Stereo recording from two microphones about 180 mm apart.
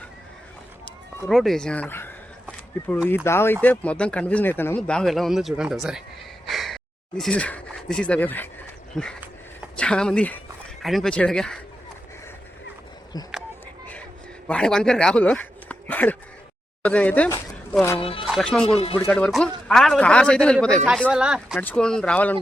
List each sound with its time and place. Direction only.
1.3 s speech: centre (ahead or behind)
6.5 s sigh: centre (ahead or behind)
8.9 s speech: centre (ahead or behind)
14.4 s speech: 5° left (ahead or behind)
18.0 s speech: 30° left (ahead or behind)
18.3 s speech: centre (ahead or behind)
21.6 s speech: 5° left (ahead or behind)